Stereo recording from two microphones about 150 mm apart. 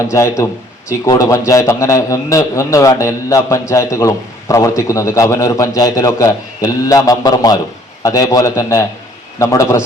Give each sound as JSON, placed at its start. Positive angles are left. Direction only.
{"t": 0.0, "sound": "a man's voice", "side_deg": 20}